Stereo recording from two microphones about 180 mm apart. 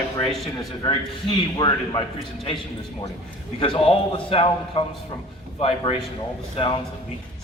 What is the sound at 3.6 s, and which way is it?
A man's voice, 30° left (ahead or behind).